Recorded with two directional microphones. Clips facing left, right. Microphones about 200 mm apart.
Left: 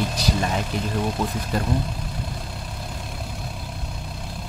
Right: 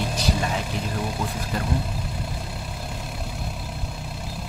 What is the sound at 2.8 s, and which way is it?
Vehicle, centre (ahead or behind).